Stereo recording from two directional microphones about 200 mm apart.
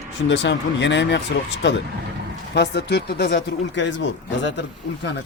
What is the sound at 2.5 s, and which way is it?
Speech, 55° left (ahead or behind).